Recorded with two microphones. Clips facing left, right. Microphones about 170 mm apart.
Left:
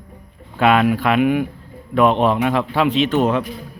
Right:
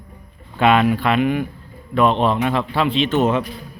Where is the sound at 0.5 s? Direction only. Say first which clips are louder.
Even; 5° left (ahead or behind).